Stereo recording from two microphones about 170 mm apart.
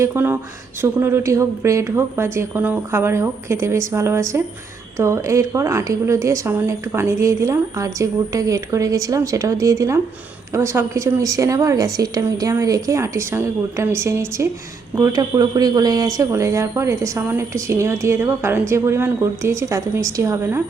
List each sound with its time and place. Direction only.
0.0 s a woman's voice: 15° right (ahead or behind)